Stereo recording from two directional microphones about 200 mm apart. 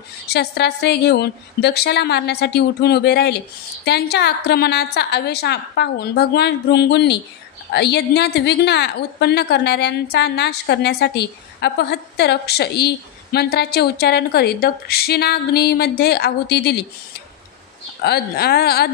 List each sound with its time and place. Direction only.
0.3 s a woman's voice: 55° left (ahead or behind)
18.0 s a woman's voice: 50° left (ahead or behind)